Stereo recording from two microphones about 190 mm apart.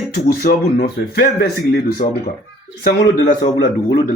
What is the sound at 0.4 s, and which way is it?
Speech, 50° left (ahead or behind).